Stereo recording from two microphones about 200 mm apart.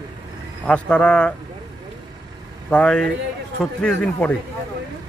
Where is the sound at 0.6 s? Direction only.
5° left (ahead or behind).